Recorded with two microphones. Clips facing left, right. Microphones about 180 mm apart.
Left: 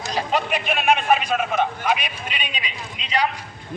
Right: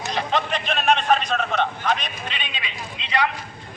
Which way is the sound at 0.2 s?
10° left (ahead or behind).